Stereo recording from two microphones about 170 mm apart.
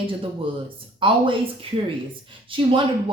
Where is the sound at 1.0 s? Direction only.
30° right (ahead or behind).